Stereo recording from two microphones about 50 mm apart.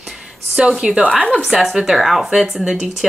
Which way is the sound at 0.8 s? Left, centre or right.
Right.